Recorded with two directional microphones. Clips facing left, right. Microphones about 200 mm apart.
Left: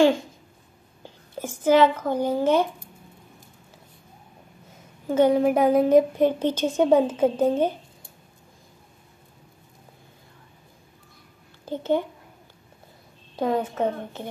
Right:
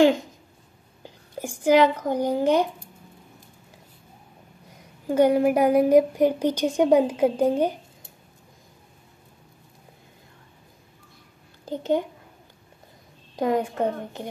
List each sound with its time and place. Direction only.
1.0 s a woman's voice: 15° right (ahead or behind)
5.0 s a woman's voice: 10° right (ahead or behind)
11.6 s a child's voice: 15° right (ahead or behind)
13.4 s a woman's voice: 15° right (ahead or behind)